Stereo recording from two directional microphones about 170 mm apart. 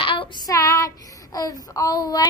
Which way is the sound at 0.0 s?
30° left (ahead or behind).